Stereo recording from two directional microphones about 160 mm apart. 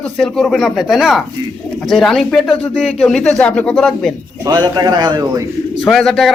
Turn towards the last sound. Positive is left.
turn(degrees=0)  # may be behind; listen again after turning